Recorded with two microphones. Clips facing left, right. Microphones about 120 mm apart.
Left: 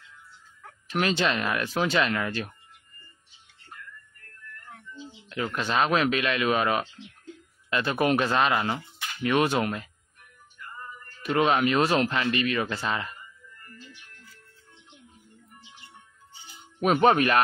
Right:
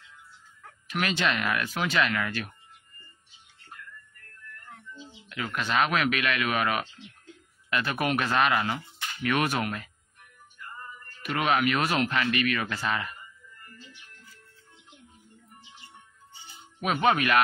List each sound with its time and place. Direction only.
0.8 s a man's voice: 30° left (ahead or behind)
5.3 s a man's voice: 30° left (ahead or behind)
11.2 s a man's voice: 30° left (ahead or behind)
16.8 s speech: 40° left (ahead or behind)